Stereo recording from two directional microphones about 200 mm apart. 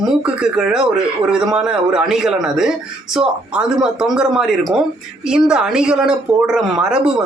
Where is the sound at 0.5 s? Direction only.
5° right (ahead or behind).